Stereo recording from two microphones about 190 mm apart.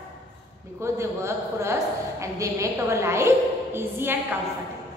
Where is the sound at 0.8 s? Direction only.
15° right (ahead or behind).